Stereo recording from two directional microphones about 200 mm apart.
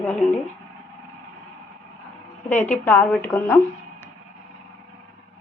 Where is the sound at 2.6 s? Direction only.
10° left (ahead or behind).